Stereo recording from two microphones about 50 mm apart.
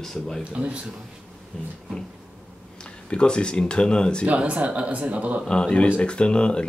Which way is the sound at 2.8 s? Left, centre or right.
Centre.